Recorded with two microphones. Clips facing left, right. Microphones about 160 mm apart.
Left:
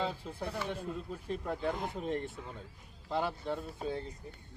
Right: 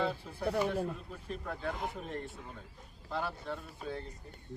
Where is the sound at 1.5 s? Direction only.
20° left (ahead or behind).